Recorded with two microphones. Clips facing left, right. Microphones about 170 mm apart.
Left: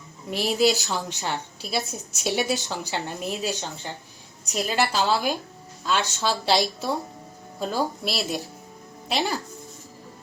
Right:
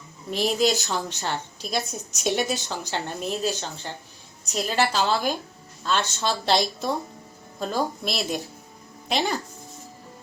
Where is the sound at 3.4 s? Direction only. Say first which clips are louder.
Right 2 dB; 15° left (ahead or behind).